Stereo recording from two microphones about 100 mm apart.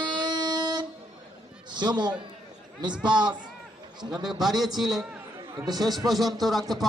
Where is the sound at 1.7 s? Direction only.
45° right (ahead or behind).